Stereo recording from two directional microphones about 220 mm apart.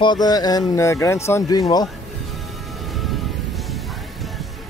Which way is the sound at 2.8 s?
Centre (ahead or behind).